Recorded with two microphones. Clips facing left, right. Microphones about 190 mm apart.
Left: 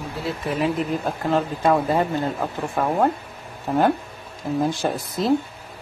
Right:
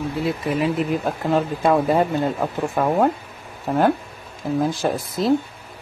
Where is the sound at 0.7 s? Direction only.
5° right (ahead or behind).